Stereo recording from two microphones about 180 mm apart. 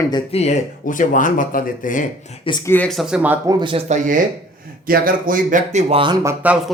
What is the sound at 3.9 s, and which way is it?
A man's voice, 45° right (ahead or behind).